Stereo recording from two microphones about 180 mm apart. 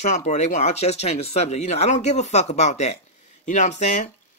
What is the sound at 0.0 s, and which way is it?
Speech, 40° left (ahead or behind).